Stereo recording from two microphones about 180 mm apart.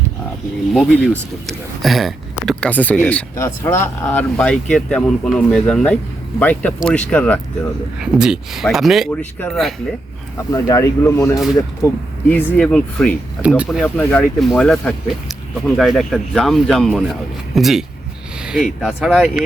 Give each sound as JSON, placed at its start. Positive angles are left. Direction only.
{"t": 0.7, "sound": "speech", "side_deg": 0}
{"t": 7.9, "sound": "speech", "side_deg": -5}
{"t": 10.3, "sound": "speech", "side_deg": 20}
{"t": 13.8, "sound": "speech", "side_deg": 10}